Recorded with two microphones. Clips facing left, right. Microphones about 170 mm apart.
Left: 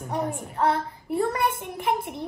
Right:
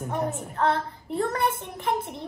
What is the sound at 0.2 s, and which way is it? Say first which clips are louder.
A child's voice: left 1 dB; 15° left (ahead or behind).